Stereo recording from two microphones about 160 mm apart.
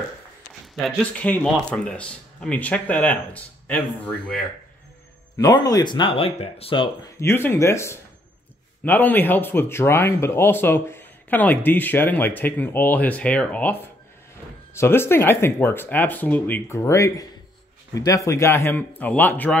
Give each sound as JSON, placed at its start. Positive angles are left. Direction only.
{"t": 0.8, "sound": "speech", "side_deg": 10}
{"t": 5.4, "sound": "speech", "side_deg": 25}
{"t": 7.2, "sound": "speech", "side_deg": 15}
{"t": 14.8, "sound": "speech", "side_deg": 15}